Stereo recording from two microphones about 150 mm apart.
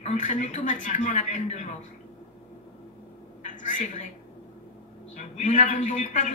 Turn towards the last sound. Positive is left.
turn(degrees=55)  # may be behind; listen again after turning